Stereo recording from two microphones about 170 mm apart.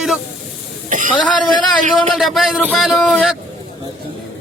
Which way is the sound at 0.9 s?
50° right (ahead or behind).